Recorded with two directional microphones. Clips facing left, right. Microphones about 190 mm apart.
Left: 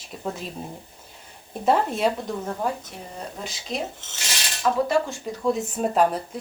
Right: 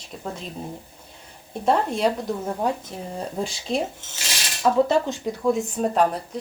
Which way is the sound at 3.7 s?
30° right (ahead or behind).